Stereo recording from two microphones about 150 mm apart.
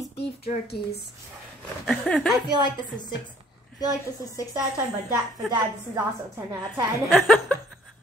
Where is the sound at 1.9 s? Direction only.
Centre (ahead or behind).